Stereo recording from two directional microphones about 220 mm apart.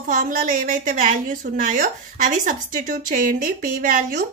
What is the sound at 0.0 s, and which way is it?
A woman's voice, 40° right (ahead or behind).